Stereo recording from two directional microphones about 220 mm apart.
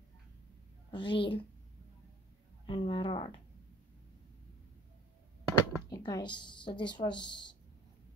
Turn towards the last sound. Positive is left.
turn(degrees=20)  # may be behind; listen again after turning